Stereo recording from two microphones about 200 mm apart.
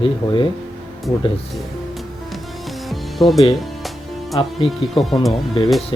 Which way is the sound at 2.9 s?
Centre (ahead or behind).